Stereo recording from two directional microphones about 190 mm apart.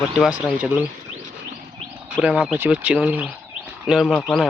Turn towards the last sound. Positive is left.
turn(degrees=0)  # may be behind; listen again after turning